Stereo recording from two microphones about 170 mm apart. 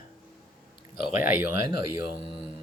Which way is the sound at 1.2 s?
10° right (ahead or behind).